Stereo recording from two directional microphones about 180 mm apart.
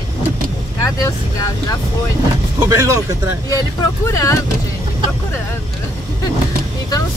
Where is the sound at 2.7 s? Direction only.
15° right (ahead or behind).